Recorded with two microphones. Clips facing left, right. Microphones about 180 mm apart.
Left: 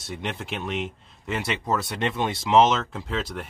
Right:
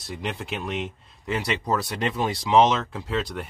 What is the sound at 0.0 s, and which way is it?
Speech, centre (ahead or behind).